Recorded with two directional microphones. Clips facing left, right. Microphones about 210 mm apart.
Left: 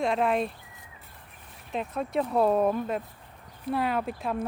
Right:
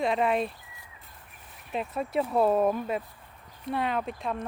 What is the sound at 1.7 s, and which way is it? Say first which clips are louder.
Speech: even; 5° right (ahead or behind).